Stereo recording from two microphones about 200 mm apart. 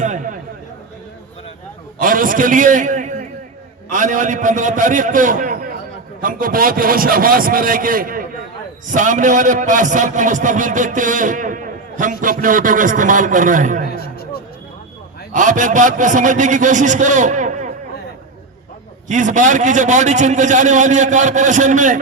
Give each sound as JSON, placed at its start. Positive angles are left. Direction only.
{"t": 0.0, "sound": "a sound", "side_deg": -40}
{"t": 2.0, "sound": "a man's voice", "side_deg": -45}
{"t": 13.9, "sound": "music", "side_deg": 50}
{"t": 15.3, "sound": "a man's voice", "side_deg": -40}
{"t": 19.0, "sound": "a man's voice", "side_deg": -40}